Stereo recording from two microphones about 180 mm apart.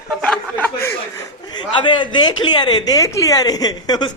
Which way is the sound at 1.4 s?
25° left (ahead or behind).